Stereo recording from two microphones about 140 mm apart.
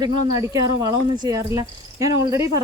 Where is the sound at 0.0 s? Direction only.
25° right (ahead or behind).